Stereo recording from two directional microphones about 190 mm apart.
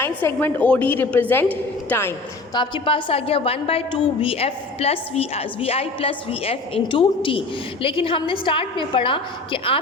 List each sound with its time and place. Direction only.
0.2 s a woman's voice: 10° left (ahead or behind)
2.6 s a woman's voice: 25° left (ahead or behind)